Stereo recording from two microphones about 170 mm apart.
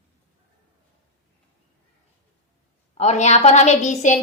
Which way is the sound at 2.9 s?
40° left (ahead or behind).